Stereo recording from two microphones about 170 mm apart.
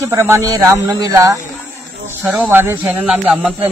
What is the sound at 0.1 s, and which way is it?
Speech, 15° right (ahead or behind).